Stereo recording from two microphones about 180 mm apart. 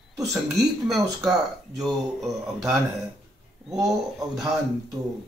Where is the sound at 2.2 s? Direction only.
Centre (ahead or behind).